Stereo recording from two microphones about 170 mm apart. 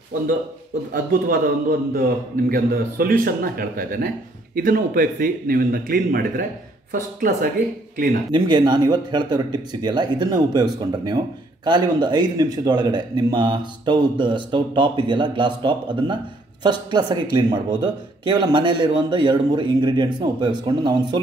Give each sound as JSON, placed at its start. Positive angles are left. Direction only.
{"t": 0.9, "sound": "a woman's voice", "side_deg": -60}
{"t": 8.3, "sound": "a man's voice", "side_deg": -25}